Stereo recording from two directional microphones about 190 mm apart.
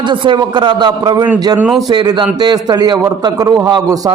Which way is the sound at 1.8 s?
20° right (ahead or behind).